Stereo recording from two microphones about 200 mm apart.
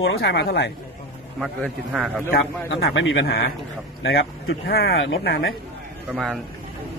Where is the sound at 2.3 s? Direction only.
60° left (ahead or behind).